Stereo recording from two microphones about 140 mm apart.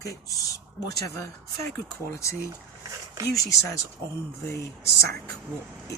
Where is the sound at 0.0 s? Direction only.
25° left (ahead or behind).